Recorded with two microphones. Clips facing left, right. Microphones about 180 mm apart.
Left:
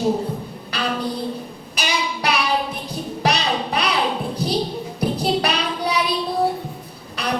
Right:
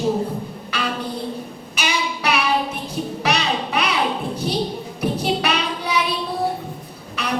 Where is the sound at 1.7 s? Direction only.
35° left (ahead or behind).